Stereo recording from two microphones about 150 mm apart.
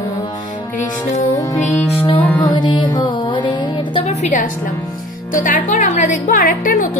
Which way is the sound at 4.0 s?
50° left (ahead or behind).